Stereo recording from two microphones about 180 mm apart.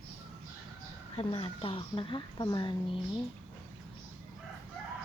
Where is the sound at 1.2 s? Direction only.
30° left (ahead or behind).